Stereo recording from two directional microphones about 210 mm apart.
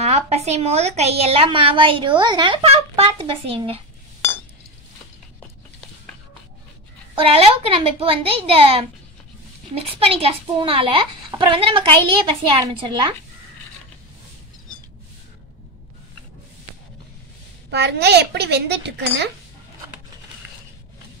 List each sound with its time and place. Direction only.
0.0 s a woman's voice: 30° right (ahead or behind)
7.2 s a woman's voice: 25° right (ahead or behind)
17.6 s a woman's voice: 55° right (ahead or behind)